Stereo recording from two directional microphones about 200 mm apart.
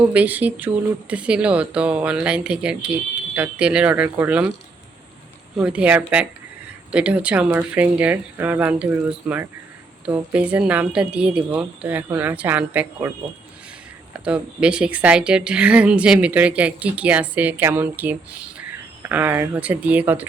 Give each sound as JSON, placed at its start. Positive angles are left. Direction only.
{"t": 0.1, "sound": "speech", "side_deg": -10}
{"t": 5.5, "sound": "a woman's voice", "side_deg": -5}
{"t": 14.3, "sound": "a woman's voice", "side_deg": -5}